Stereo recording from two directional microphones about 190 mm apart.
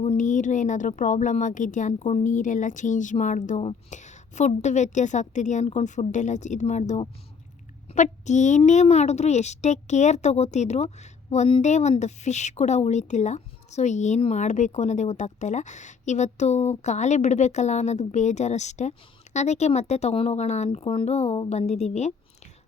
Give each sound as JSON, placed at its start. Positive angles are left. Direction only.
{"t": 0.0, "sound": "a woman's voice", "side_deg": 40}